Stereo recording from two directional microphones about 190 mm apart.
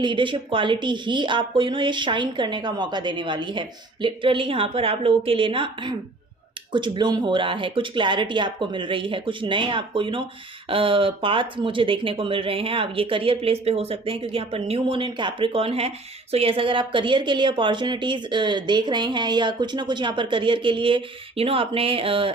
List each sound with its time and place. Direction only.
0.0 s a woman's voice: 25° right (ahead or behind)